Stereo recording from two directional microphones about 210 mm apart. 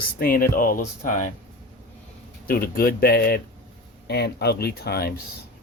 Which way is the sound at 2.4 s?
45° left (ahead or behind).